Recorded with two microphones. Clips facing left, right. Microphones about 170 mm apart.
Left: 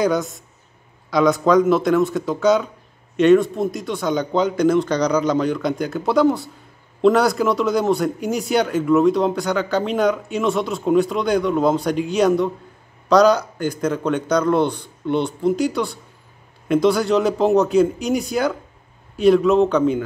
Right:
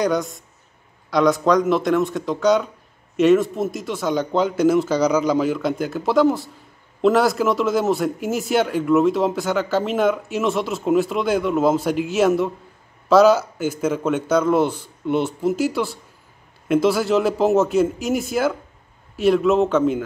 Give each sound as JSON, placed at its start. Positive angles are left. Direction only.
{"t": 0.0, "sound": "a man's voice", "side_deg": 0}